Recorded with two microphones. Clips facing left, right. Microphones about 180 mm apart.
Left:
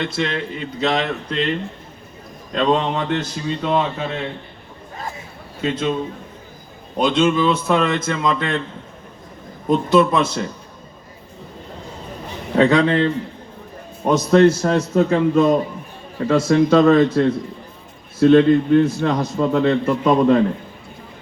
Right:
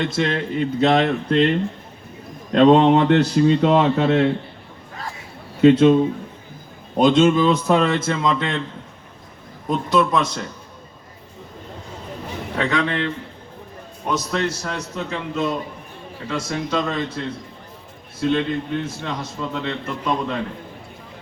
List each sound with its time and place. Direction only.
0.0 s speech: 45° right (ahead or behind); by 4.3 s 75° right (ahead or behind)
5.5 s a man's voice: 65° right (ahead or behind)
6.9 s speech: 45° right (ahead or behind); by 8.5 s 20° right (ahead or behind)
9.6 s speech: centre (ahead or behind)
12.5 s a man's voice: 35° left (ahead or behind)
14.3 s a man's voice: 45° left (ahead or behind)